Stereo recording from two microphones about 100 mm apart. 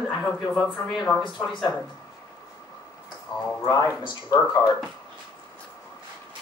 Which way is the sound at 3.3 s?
45° left (ahead or behind).